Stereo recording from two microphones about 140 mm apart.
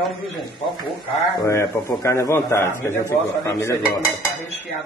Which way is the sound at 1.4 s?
20° left (ahead or behind).